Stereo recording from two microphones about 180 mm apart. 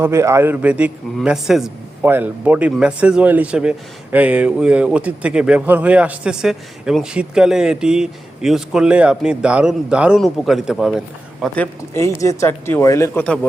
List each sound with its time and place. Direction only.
0.0 s a man's voice: 15° right (ahead or behind); by 13.2 s 15° left (ahead or behind)
13.2 s a man's voice: 5° left (ahead or behind)